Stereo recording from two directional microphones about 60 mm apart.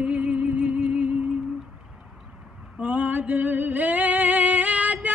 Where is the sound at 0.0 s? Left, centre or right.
Right.